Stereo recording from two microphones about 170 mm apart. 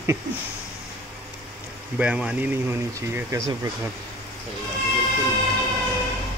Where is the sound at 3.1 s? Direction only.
20° right (ahead or behind).